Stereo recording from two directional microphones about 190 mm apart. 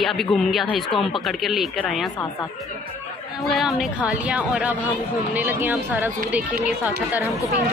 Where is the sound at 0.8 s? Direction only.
25° left (ahead or behind).